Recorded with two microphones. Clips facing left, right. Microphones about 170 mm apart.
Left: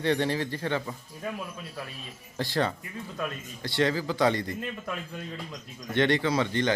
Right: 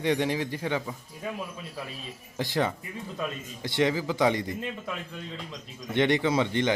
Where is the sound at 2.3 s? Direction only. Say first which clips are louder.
Even; 15° right (ahead or behind).